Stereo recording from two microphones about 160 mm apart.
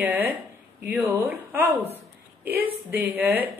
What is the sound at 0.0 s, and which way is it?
A woman's voice, 10° right (ahead or behind).